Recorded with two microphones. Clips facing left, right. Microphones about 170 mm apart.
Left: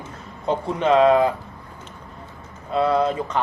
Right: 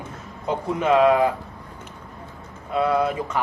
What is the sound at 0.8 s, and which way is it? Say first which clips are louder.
Speech: left 1 dB; 25° left (ahead or behind).